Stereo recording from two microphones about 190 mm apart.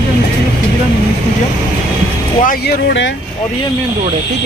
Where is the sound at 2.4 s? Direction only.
60° left (ahead or behind).